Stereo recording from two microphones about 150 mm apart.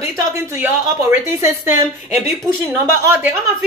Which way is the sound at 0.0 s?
15° right (ahead or behind).